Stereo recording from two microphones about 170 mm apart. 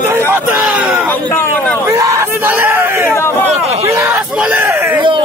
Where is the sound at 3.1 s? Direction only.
15° left (ahead or behind).